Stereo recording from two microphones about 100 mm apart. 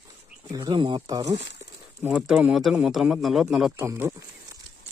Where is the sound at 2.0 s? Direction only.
20° right (ahead or behind).